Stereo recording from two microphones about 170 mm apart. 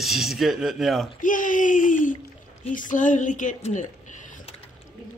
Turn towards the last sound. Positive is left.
turn(degrees=45)  # may be behind; listen again after turning